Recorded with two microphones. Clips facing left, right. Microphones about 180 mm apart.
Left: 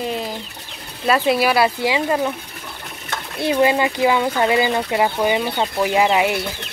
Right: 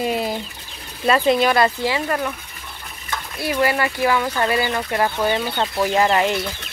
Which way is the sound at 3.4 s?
20° left (ahead or behind).